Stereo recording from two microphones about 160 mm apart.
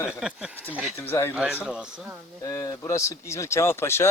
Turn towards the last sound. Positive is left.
turn(degrees=15)  # may be behind; listen again after turning